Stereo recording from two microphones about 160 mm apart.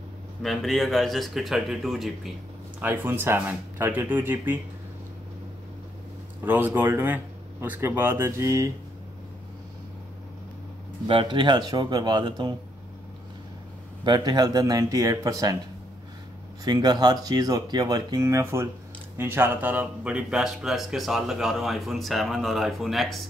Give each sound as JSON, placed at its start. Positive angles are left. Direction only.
{"t": 0.4, "sound": "speech", "side_deg": 0}
{"t": 2.8, "sound": "speech", "side_deg": -10}
{"t": 6.4, "sound": "speech", "side_deg": -10}
{"t": 11.1, "sound": "speech", "side_deg": -30}
{"t": 14.0, "sound": "speech", "side_deg": -30}
{"t": 16.6, "sound": "speech", "side_deg": -25}